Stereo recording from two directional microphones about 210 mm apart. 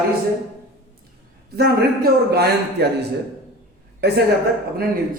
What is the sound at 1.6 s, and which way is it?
Speech, 50° right (ahead or behind).